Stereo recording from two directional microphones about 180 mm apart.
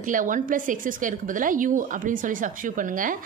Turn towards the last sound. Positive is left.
turn(degrees=-50)  # may be behind; listen again after turning